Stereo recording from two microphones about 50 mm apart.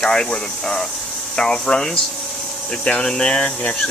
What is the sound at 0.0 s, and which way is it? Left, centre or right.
Speech, centre.